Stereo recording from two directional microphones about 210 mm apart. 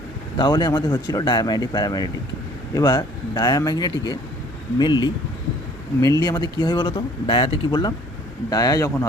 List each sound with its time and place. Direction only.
0.3 s speech: 20° left (ahead or behind)
6.2 s speech: 20° left (ahead or behind)